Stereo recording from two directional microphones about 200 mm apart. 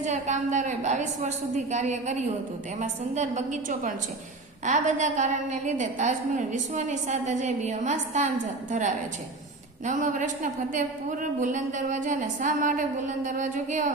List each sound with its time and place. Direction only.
0.0 s a woman's voice: 35° right (ahead or behind)
9.8 s a woman's voice: 40° right (ahead or behind)